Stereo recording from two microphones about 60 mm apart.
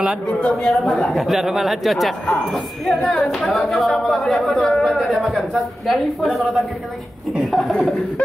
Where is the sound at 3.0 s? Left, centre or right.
Centre.